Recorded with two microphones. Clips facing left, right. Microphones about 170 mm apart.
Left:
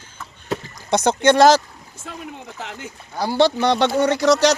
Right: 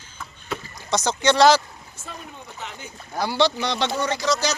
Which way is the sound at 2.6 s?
90° left.